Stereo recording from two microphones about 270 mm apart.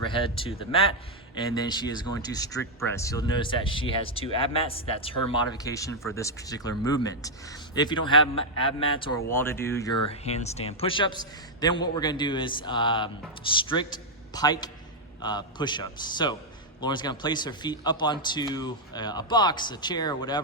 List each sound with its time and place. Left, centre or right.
0.0 s speech: centre
9.3 s speech: centre
10.1 s a man's voice: left